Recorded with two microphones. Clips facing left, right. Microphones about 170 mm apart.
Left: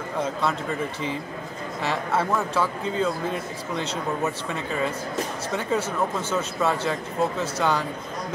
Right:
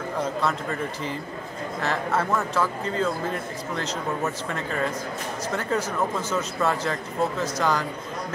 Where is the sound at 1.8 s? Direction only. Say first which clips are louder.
Left 1 dB; 5° left (ahead or behind).